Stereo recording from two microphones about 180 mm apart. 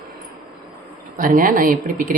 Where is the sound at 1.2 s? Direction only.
50° right (ahead or behind).